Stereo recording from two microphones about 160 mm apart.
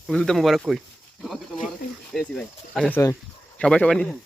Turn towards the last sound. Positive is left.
turn(degrees=5)  # may be behind; listen again after turning